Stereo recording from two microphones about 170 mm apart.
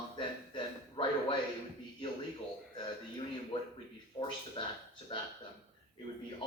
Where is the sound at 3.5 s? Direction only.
30° left (ahead or behind).